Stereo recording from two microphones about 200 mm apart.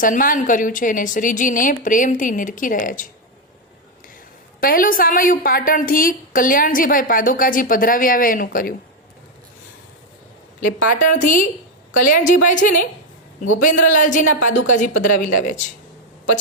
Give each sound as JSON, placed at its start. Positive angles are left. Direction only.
{"t": 0.0, "sound": "a woman's voice", "side_deg": 45}
{"t": 4.6, "sound": "a woman's voice", "side_deg": 45}
{"t": 10.6, "sound": "a woman's voice", "side_deg": 40}